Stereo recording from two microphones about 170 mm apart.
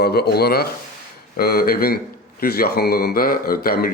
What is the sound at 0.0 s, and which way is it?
Speech, 70° left (ahead or behind).